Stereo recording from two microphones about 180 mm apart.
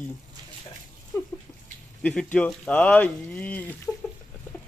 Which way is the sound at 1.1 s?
15° left (ahead or behind).